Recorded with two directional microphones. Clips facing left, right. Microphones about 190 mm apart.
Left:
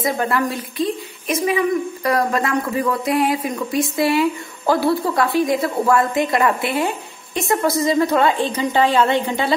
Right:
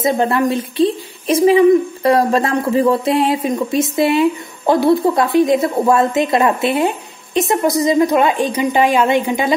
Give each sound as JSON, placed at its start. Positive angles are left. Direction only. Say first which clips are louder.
{"t": 0.0, "sound": "a woman's voice", "louder": "right 5 dB", "side_deg": -25}